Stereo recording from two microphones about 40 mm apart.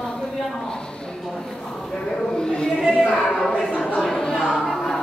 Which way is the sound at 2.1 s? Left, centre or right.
Centre.